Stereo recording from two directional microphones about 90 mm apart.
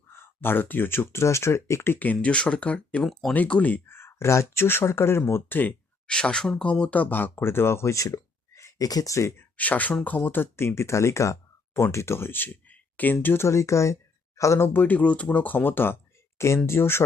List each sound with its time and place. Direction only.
0.1 s speech: 25° left (ahead or behind); by 3.3 s 5° left (ahead or behind)
3.3 s speech: 15° left (ahead or behind)
6.1 s speech: 10° left (ahead or behind); by 9.5 s 35° left (ahead or behind)
9.6 s speech: 15° left (ahead or behind); by 14.7 s 35° left (ahead or behind)
14.7 s speech: 20° left (ahead or behind)